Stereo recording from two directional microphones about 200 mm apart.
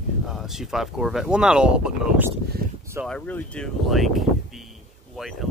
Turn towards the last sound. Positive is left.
turn(degrees=0)  # may be behind; listen again after turning